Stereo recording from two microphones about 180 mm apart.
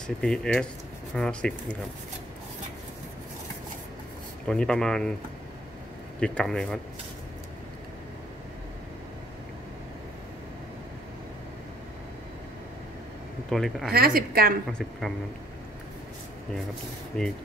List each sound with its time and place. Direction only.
0.0 s speech: 5° left (ahead or behind)
4.5 s speech: 5° left (ahead or behind)
6.1 s speech: 5° left (ahead or behind)
13.5 s speech: centre (ahead or behind)
13.8 s speech: 55° right (ahead or behind)
14.7 s speech: centre (ahead or behind)
17.1 s speech: 5° left (ahead or behind)